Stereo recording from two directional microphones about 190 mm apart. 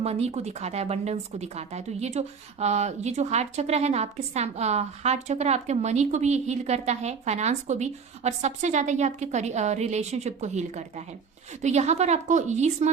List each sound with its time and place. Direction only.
0.0 s a woman's voice: 35° right (ahead or behind)